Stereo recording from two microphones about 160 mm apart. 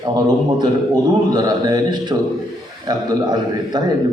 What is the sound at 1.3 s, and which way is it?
A man's voice, 25° right (ahead or behind).